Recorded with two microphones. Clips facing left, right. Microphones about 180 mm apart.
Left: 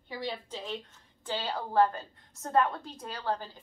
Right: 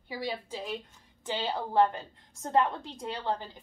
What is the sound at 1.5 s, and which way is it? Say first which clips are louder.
A woman's voice: even; 20° right (ahead or behind).